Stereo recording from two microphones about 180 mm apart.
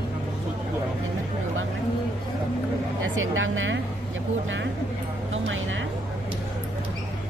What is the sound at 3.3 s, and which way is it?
Speech, 90° right.